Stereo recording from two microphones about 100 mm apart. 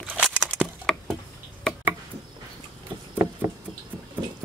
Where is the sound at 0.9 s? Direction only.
5° left (ahead or behind).